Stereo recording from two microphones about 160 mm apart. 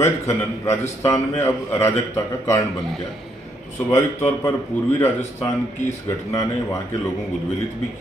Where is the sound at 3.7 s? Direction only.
15° left (ahead or behind).